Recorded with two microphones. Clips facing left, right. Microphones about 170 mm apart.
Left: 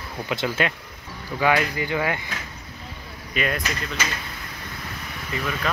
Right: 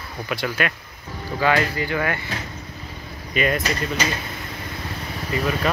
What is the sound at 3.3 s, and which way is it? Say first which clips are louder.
Speech: right 4 dB; centre (ahead or behind).